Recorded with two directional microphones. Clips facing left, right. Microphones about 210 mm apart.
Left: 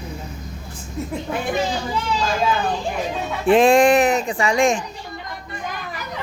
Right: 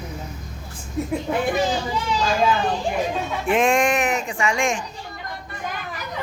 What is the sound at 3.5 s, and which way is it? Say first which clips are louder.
Speech: left 6 dB; 35° left (ahead or behind).